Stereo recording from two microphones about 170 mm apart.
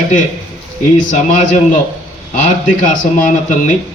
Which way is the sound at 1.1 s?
50° left (ahead or behind).